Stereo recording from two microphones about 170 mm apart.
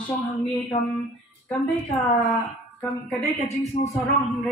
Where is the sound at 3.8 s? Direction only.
40° left (ahead or behind).